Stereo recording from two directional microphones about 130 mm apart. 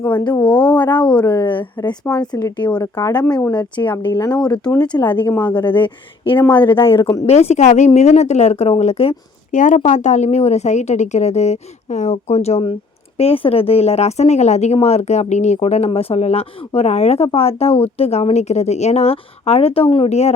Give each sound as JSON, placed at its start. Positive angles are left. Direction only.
{"t": 0.3, "sound": "speech", "side_deg": 10}
{"t": 0.8, "sound": "a woman's voice", "side_deg": 35}
{"t": 3.2, "sound": "speech", "side_deg": 5}
{"t": 3.5, "sound": "a woman's voice", "side_deg": 35}
{"t": 4.6, "sound": "speech", "side_deg": 10}
{"t": 6.7, "sound": "a woman's voice", "side_deg": 40}
{"t": 7.3, "sound": "speech", "side_deg": 55}
{"t": 9.5, "sound": "speech", "side_deg": 75}